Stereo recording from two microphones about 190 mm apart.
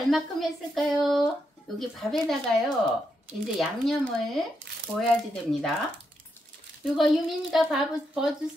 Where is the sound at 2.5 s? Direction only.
5° left (ahead or behind).